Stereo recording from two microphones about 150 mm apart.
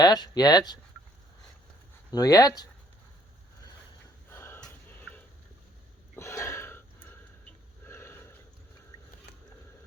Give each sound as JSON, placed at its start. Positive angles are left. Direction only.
{"t": 0.0, "sound": "speech", "side_deg": 25}
{"t": 2.0, "sound": "speech", "side_deg": 25}
{"t": 4.3, "sound": "a sound", "side_deg": 15}
{"t": 7.9, "sound": "sniff", "side_deg": 15}
{"t": 8.9, "sound": "biting", "side_deg": 25}